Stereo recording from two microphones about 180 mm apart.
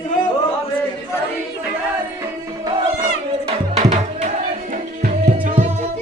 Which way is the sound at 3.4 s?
35° right (ahead or behind).